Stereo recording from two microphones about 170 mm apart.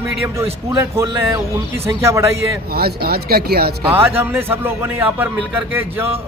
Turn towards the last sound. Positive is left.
turn(degrees=-10)  # may be behind; listen again after turning